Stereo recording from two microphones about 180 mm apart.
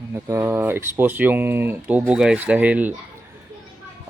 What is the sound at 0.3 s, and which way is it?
Speech, 15° right (ahead or behind).